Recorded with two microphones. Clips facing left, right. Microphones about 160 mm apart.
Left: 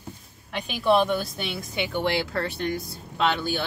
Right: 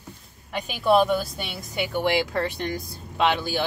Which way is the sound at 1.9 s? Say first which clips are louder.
Right 3 dB; 15° right (ahead or behind).